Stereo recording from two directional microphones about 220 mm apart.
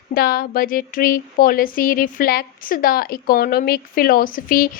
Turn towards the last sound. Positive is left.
turn(degrees=40)  # may be behind; listen again after turning